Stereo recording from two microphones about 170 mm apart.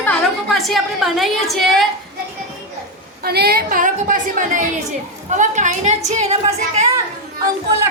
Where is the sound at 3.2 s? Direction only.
65° right (ahead or behind); by 6.8 s 40° right (ahead or behind).